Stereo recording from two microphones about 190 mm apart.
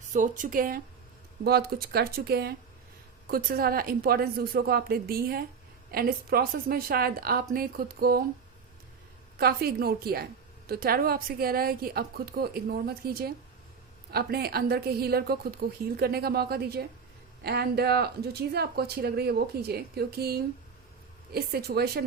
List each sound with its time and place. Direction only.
0.1 s a woman's voice: 45° right (ahead or behind)
9.4 s a woman's voice: 55° right (ahead or behind)
15.6 s speech: 70° right (ahead or behind)
16.0 s speech: 55° right (ahead or behind)